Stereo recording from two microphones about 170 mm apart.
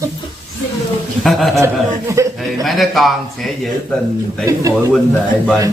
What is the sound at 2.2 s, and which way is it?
Speech, 15° right (ahead or behind).